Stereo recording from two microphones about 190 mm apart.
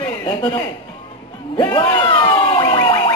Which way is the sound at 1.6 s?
25° left (ahead or behind).